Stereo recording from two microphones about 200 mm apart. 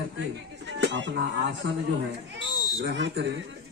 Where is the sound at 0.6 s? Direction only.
60° right (ahead or behind).